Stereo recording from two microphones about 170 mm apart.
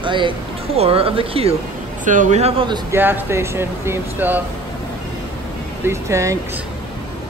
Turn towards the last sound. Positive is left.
turn(degrees=-15)  # may be behind; listen again after turning